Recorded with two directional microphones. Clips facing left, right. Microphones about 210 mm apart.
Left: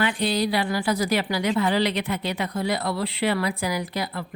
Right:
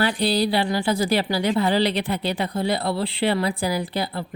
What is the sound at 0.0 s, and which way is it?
Speech, 35° right (ahead or behind).